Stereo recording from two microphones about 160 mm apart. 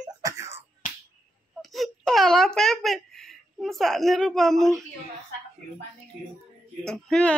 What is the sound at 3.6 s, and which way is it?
A woman's voice, centre (ahead or behind).